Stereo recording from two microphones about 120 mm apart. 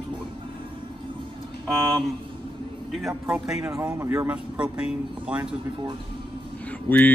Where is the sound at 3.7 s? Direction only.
25° right (ahead or behind).